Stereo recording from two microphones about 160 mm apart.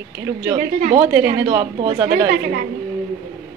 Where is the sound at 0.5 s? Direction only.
60° right (ahead or behind).